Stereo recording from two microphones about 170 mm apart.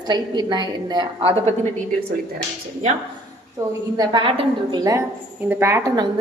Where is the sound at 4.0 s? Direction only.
30° right (ahead or behind).